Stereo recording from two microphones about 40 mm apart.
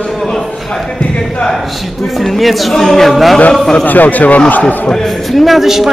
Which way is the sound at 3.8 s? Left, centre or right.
Left.